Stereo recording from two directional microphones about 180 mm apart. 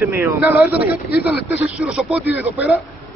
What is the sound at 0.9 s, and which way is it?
Speech, 60° left (ahead or behind).